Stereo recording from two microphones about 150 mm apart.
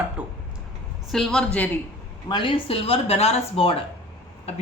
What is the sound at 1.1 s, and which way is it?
Speech, centre (ahead or behind).